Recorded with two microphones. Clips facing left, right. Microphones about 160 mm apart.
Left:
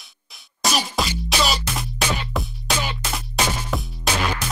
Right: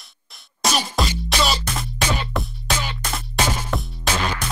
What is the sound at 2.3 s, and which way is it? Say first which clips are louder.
Music: right 1 dB; centre (ahead or behind).